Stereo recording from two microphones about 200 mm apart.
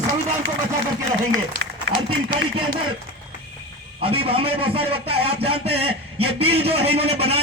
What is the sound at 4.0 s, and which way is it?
A man's voice, 30° right (ahead or behind).